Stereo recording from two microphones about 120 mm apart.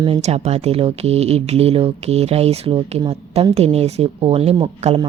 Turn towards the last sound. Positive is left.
turn(degrees=-55)  # may be behind; listen again after turning